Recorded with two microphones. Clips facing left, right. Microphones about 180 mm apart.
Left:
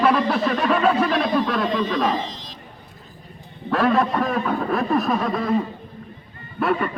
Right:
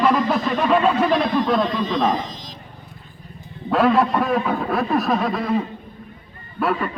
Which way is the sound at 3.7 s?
10° right (ahead or behind).